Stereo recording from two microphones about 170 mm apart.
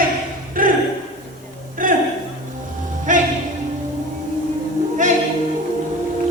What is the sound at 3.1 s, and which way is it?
Music, 50° right (ahead or behind).